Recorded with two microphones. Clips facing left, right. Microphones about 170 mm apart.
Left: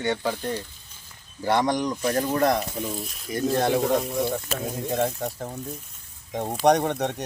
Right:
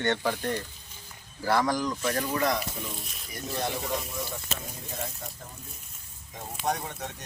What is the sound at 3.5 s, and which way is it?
Speech, 60° left (ahead or behind).